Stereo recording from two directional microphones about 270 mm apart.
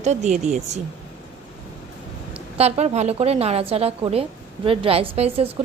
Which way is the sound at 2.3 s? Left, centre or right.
Right.